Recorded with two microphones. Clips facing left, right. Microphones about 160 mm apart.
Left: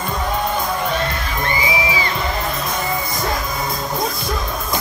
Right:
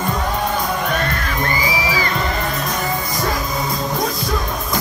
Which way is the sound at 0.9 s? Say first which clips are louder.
Right 1 dB; 40° right (ahead or behind).